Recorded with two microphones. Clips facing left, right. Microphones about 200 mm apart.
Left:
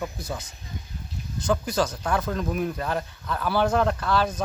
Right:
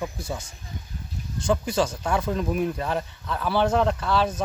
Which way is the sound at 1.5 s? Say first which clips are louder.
Right 1 dB; 5° right (ahead or behind).